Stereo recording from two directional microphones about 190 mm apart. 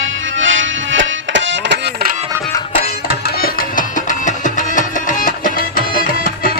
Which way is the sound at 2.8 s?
55° left (ahead or behind).